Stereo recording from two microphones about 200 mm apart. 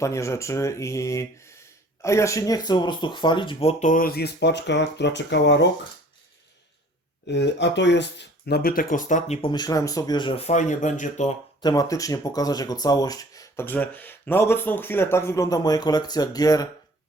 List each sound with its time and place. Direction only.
0.0 s speech: 15° left (ahead or behind); by 5.6 s 60° left (ahead or behind)
7.3 s speech: 60° left (ahead or behind); by 11.3 s 35° left (ahead or behind)
11.6 s speech: 20° left (ahead or behind)